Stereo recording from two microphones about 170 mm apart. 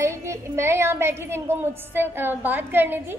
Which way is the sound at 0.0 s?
15° right (ahead or behind).